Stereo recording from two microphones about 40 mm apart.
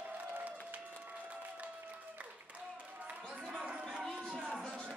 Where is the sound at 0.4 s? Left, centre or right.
Right.